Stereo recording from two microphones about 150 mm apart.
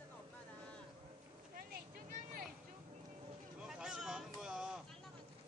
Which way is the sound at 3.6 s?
5° right (ahead or behind).